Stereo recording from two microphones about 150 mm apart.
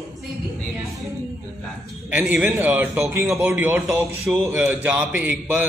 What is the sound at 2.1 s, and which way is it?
A man's voice, 10° right (ahead or behind).